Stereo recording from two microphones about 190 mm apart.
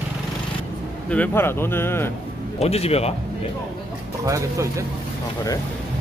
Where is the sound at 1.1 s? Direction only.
10° left (ahead or behind).